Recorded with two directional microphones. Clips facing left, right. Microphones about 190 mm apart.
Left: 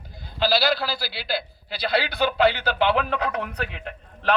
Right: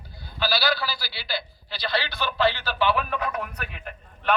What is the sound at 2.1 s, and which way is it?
Speech, 60° left (ahead or behind).